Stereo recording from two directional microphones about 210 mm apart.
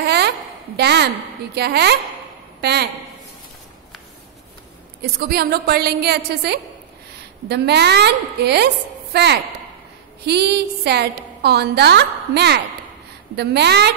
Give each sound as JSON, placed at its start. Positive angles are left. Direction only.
{"t": 0.0, "sound": "a sound", "side_deg": -50}
{"t": 0.7, "sound": "a woman's voice", "side_deg": -50}
{"t": 5.2, "sound": "a woman's voice", "side_deg": -50}